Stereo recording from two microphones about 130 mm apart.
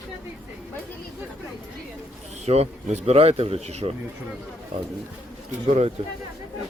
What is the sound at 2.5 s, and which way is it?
Speech, 55° right (ahead or behind).